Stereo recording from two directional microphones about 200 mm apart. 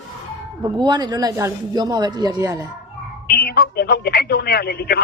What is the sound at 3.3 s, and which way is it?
Speech, 50° left (ahead or behind).